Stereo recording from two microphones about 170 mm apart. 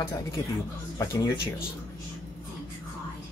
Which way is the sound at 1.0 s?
15° left (ahead or behind).